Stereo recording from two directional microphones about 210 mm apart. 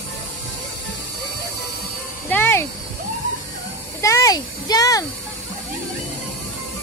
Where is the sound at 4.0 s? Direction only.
15° left (ahead or behind).